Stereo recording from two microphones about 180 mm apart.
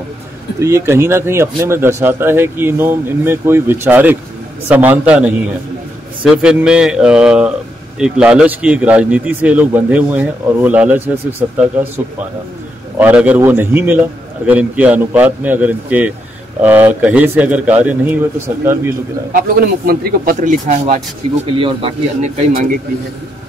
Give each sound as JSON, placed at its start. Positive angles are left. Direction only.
{"t": 0.6, "sound": "speech", "side_deg": -15}
{"t": 13.0, "sound": "speech", "side_deg": -10}
{"t": 19.5, "sound": "speech", "side_deg": -55}
{"t": 21.5, "sound": "speech", "side_deg": -30}
{"t": 22.5, "sound": "speech", "side_deg": -50}